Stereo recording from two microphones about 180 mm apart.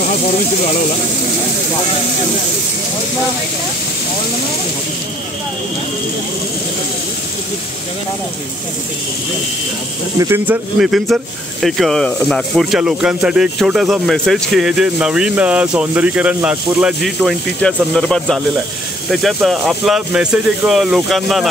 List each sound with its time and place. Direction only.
10.1 s speech: 15° right (ahead or behind)